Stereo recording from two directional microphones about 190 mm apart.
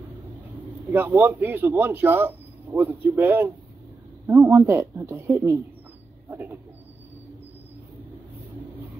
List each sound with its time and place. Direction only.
0.9 s a man's voice: 10° right (ahead or behind)